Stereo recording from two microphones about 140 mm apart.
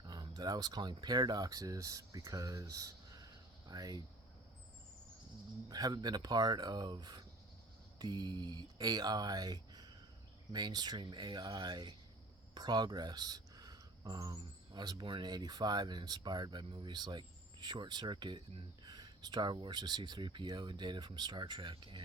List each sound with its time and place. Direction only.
0.0 s speech: 30° right (ahead or behind)
5.6 s speech: 30° right (ahead or behind)